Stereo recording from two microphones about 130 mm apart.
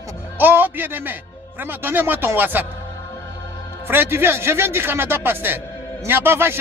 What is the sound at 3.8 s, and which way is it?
Speech, 15° right (ahead or behind).